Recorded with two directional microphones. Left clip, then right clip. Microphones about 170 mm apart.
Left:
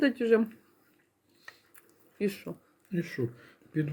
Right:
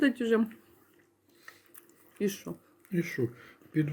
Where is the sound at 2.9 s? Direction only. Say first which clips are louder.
Right 2 dB; 20° right (ahead or behind).